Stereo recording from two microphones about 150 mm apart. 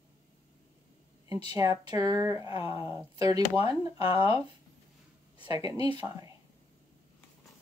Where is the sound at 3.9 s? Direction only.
40° left (ahead or behind).